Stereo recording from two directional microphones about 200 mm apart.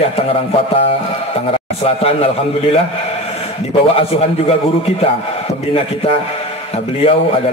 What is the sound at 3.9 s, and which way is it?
A man's voice, 30° left (ahead or behind).